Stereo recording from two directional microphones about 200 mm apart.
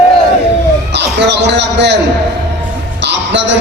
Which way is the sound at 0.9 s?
60° right (ahead or behind).